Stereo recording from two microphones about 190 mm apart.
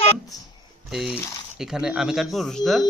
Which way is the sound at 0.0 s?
15° left (ahead or behind).